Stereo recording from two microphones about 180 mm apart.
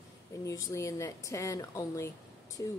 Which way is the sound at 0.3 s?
20° left (ahead or behind).